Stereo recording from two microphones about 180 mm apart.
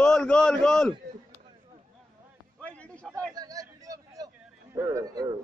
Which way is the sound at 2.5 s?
5° left (ahead or behind).